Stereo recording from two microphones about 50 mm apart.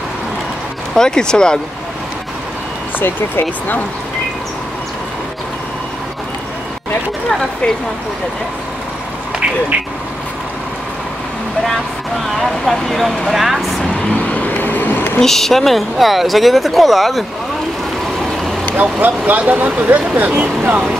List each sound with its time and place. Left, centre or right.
0.9 s speech: centre
3.0 s speech: left
7.2 s speech: centre
12.4 s speech: centre
14.1 s vehicle: left
15.1 s speech: centre
18.8 s speech: right